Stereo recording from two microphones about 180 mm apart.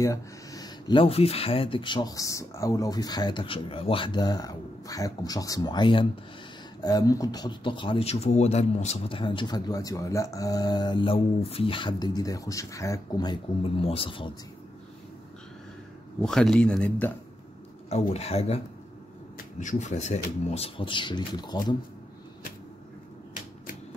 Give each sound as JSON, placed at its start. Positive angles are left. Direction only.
{"t": 0.0, "sound": "speech", "side_deg": 20}
{"t": 16.2, "sound": "a man's voice", "side_deg": 5}
{"t": 17.8, "sound": "speech", "side_deg": 35}